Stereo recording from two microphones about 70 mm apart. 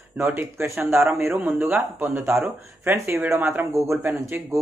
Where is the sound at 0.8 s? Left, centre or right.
Right.